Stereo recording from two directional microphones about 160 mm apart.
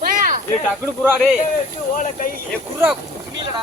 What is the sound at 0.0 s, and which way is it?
Snake, 60° right (ahead or behind).